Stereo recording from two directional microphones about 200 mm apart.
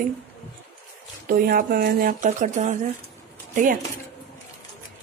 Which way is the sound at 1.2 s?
45° right (ahead or behind).